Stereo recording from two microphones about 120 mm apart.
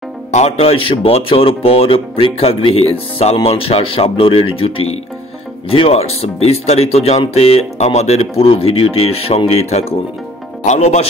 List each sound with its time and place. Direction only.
0.3 s speech: 65° left (ahead or behind)
10.6 s speech: 75° left (ahead or behind)